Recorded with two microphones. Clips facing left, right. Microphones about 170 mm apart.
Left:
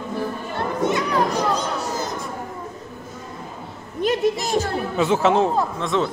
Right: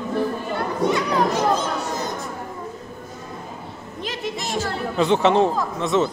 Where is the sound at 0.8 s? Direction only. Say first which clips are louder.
Even; 15° left (ahead or behind).